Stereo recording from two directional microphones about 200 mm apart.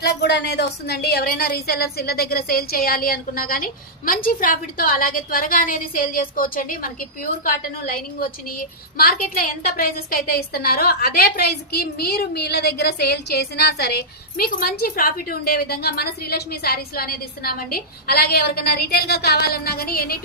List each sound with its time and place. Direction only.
0.0 s a woman's voice: 60° left (ahead or behind)